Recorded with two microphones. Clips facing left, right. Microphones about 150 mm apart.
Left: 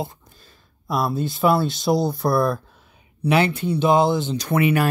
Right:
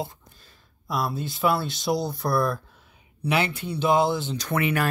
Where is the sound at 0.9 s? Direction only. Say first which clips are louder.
Left 5 dB; 40° left (ahead or behind).